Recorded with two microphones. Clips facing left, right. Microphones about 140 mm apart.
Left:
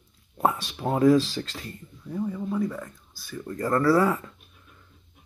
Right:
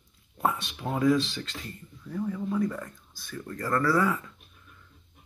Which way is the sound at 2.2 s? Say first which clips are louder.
Left 1 dB; 10° left (ahead or behind).